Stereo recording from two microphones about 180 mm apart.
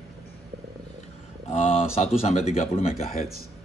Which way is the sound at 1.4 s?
35° left (ahead or behind).